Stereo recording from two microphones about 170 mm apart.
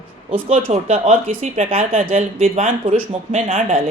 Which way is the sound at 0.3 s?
35° right (ahead or behind).